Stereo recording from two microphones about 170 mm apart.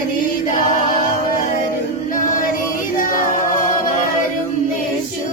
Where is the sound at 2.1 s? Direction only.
50° left (ahead or behind).